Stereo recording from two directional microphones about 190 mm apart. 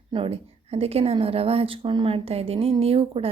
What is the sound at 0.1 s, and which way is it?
A woman's voice, 30° right (ahead or behind).